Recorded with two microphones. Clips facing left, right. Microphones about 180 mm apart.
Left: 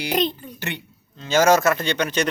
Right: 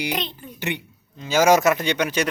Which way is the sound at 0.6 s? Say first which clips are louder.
Right 4 dB; 15° right (ahead or behind).